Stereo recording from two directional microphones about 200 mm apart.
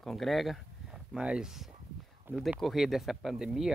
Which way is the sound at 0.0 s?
Centre (ahead or behind).